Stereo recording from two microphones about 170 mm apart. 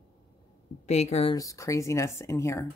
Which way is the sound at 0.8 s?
40° left (ahead or behind).